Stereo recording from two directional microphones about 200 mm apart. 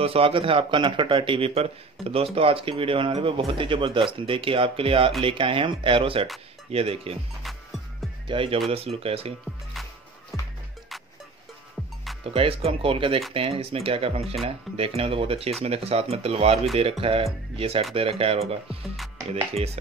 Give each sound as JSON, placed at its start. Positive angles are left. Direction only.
{"t": 0.0, "sound": "speech", "side_deg": -30}
{"t": 7.4, "sound": "music", "side_deg": 0}
{"t": 8.3, "sound": "speech", "side_deg": -25}
{"t": 9.8, "sound": "music", "side_deg": 0}
{"t": 12.2, "sound": "speech", "side_deg": -30}